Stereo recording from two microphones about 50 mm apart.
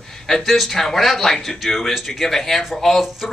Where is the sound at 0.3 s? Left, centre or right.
Centre.